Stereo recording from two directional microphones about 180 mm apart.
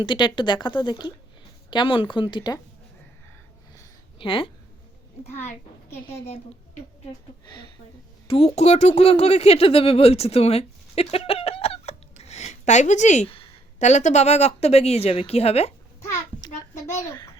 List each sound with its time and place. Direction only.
0.0 s speech: 25° left (ahead or behind)
3.8 s a sound: 30° left (ahead or behind)
6.1 s a woman's voice: 35° left (ahead or behind)
8.3 s speech: 35° left (ahead or behind)